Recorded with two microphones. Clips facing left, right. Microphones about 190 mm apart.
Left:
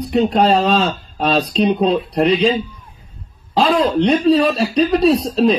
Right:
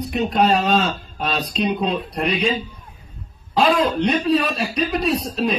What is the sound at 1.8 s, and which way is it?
Speech, 30° left (ahead or behind).